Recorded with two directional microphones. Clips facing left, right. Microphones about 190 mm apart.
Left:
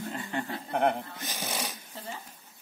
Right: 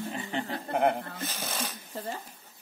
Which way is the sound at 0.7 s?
Centre (ahead or behind).